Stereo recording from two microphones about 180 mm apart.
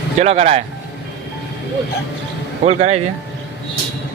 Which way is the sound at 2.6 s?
40° right (ahead or behind).